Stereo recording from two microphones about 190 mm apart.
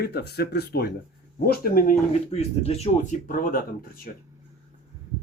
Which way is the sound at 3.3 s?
45° left (ahead or behind).